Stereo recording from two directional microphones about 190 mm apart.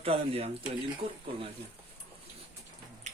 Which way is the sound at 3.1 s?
40° right (ahead or behind).